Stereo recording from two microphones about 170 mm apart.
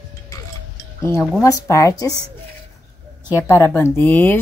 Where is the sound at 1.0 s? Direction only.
15° left (ahead or behind).